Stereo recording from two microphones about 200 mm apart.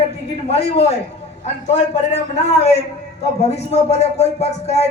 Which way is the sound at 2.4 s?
35° left (ahead or behind).